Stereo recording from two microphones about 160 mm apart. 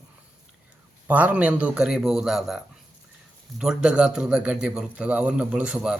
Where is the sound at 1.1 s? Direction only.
10° right (ahead or behind).